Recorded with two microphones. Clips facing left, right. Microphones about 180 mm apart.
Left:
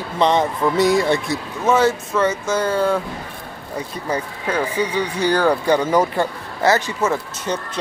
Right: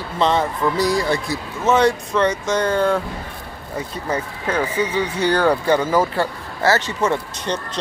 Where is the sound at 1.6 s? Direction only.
5° left (ahead or behind).